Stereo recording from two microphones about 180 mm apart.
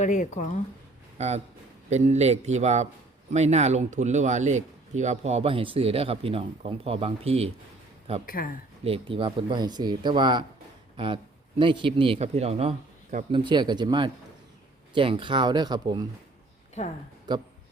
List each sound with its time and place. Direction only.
0.0 s speech: 45° left (ahead or behind)
1.9 s speech: 40° right (ahead or behind)
8.3 s speech: 50° left (ahead or behind)
8.8 s speech: 30° right (ahead or behind)
13.3 s speech: 25° right (ahead or behind)
17.3 s speech: 25° right (ahead or behind)